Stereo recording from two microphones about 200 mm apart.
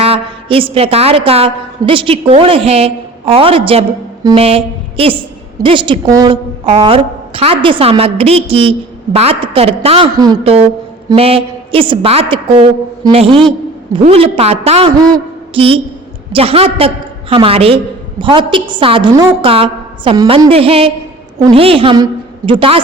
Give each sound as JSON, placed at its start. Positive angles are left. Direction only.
{"t": 0.0, "sound": "a woman's voice", "side_deg": -30}
{"t": 15.1, "sound": "a sound", "side_deg": -25}
{"t": 16.3, "sound": "a woman's voice", "side_deg": -30}